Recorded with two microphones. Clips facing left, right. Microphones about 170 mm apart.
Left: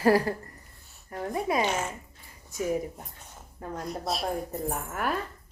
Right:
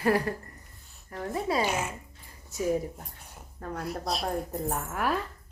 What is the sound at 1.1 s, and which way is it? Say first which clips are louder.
Speech: left 1 dB; 20° left (ahead or behind).